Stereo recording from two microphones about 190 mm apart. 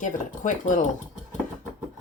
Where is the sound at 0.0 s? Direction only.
40° left (ahead or behind).